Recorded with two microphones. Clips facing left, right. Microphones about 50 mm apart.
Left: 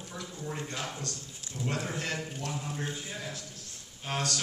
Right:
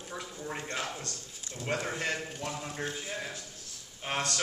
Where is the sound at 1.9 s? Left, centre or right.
Right.